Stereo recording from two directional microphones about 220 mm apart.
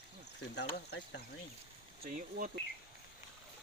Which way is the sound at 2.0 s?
40° right (ahead or behind).